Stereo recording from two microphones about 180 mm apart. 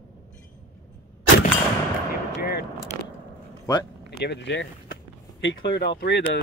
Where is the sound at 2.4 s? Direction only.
60° left (ahead or behind).